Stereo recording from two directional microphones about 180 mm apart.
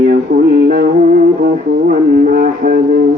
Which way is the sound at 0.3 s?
40° right (ahead or behind).